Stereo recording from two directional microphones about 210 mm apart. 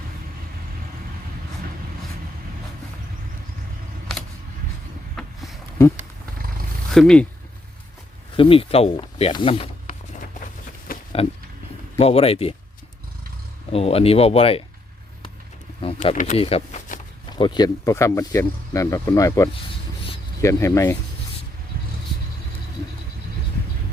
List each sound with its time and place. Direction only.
5.1 s a sound: centre (ahead or behind)
6.9 s speech: centre (ahead or behind)
8.4 s speech: 25° left (ahead or behind)
10.9 s a sound: 45° left (ahead or behind)
11.9 s speech: 30° left (ahead or behind)
13.7 s speech: 30° left (ahead or behind)
16.1 s speech: 35° left (ahead or behind); by 20.9 s 15° left (ahead or behind)